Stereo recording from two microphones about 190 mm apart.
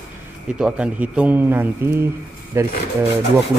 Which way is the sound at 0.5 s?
5° right (ahead or behind).